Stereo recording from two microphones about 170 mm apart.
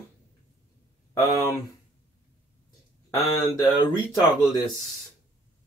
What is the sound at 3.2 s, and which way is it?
Speech, centre (ahead or behind).